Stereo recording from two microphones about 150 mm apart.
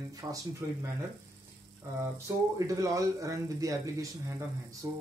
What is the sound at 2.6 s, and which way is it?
Speech, 20° right (ahead or behind).